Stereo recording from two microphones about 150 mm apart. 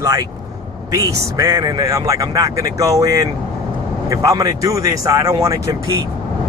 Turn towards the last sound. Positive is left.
turn(degrees=-20)  # may be behind; listen again after turning